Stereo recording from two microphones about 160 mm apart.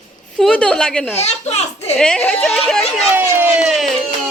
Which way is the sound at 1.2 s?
40° left (ahead or behind).